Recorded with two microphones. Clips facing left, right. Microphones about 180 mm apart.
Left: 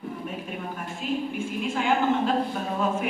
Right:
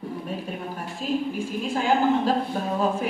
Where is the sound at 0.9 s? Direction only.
35° right (ahead or behind).